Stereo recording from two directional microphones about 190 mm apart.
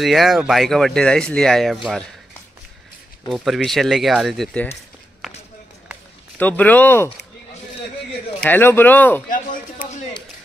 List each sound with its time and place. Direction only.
0.0 s speech: centre (ahead or behind)
3.3 s speech: centre (ahead or behind)
6.3 s speech: 10° left (ahead or behind)
8.4 s speech: 10° left (ahead or behind)
9.3 s a sound: 45° left (ahead or behind)